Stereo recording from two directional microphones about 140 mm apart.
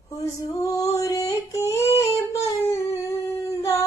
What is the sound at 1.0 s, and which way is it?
Yodeling, 20° left (ahead or behind).